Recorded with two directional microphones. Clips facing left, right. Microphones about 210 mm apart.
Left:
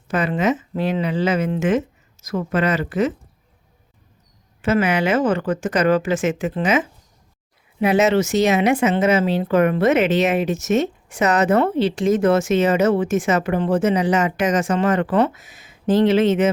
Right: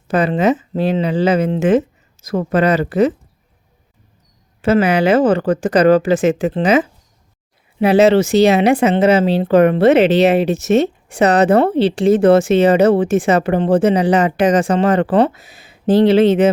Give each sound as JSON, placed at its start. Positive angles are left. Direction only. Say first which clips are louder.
{"t": 0.1, "sound": "speech", "louder": "right 5 dB", "side_deg": -35}
{"t": 4.6, "sound": "speech", "louder": "right 5 dB", "side_deg": -35}